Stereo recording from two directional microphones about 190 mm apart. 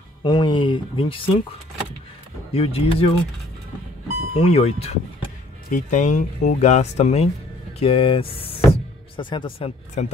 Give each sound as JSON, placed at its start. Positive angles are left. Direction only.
{"t": 0.2, "sound": "speech", "side_deg": 25}
{"t": 2.5, "sound": "speech", "side_deg": 30}
{"t": 4.4, "sound": "speech", "side_deg": 30}
{"t": 10.0, "sound": "speech", "side_deg": 35}